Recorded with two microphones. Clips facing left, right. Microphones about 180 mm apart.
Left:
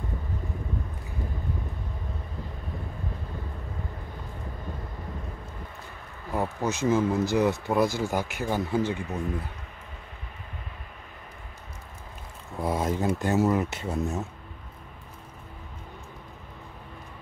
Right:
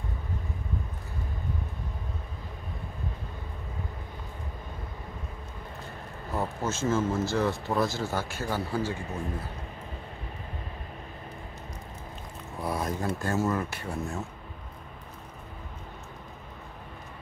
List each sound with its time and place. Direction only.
6.3 s speech: 15° left (ahead or behind)
12.6 s speech: 20° left (ahead or behind)